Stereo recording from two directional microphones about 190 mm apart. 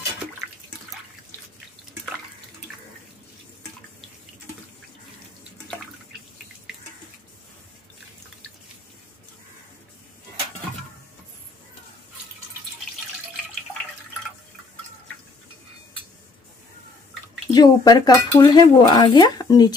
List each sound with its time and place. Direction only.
17.5 s speech: 20° left (ahead or behind)